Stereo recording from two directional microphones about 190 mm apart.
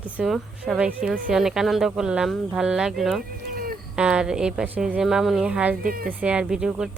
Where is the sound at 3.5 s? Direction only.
50° right (ahead or behind).